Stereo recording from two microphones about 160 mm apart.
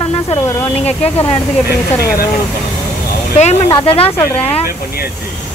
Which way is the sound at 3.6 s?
30° left (ahead or behind).